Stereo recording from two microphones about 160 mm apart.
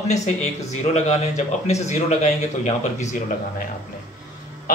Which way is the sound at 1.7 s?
45° left (ahead or behind).